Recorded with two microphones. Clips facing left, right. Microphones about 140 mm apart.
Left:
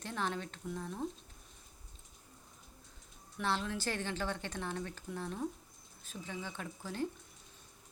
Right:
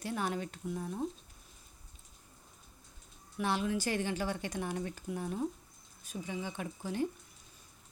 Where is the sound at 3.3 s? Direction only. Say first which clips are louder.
Right 3 dB; 15° right (ahead or behind).